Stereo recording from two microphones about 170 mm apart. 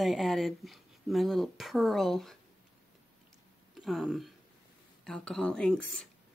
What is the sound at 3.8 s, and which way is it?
Speech, centre (ahead or behind).